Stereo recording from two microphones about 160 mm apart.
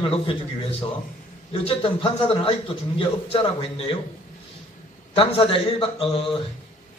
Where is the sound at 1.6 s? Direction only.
35° left (ahead or behind).